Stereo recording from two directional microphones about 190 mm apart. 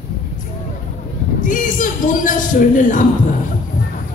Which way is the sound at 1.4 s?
45° left (ahead or behind).